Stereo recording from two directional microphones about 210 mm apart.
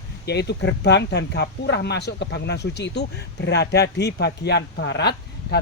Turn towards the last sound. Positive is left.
turn(degrees=50)  # may be behind; listen again after turning